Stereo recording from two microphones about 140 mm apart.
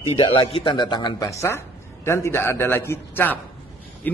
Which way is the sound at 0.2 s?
40° left (ahead or behind).